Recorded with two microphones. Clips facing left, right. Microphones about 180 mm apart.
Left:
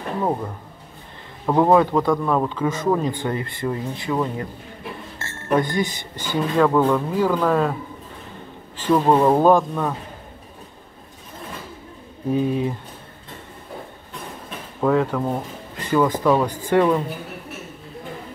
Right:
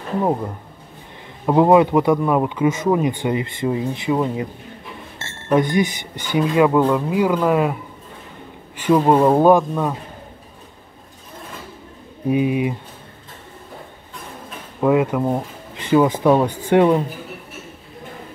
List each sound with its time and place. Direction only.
1.4 s speech: 15° right (ahead or behind)
8.7 s speech: 15° right (ahead or behind)
12.3 s speech: 10° right (ahead or behind)
14.8 s speech: 10° right (ahead or behind)